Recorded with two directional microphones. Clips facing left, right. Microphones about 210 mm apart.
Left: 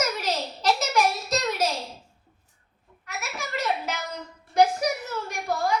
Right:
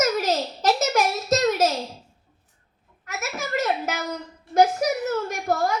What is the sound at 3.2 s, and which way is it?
Speech, 45° right (ahead or behind).